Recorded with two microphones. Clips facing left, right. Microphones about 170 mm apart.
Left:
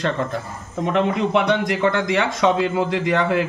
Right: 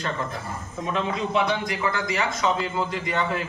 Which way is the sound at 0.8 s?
65° left (ahead or behind).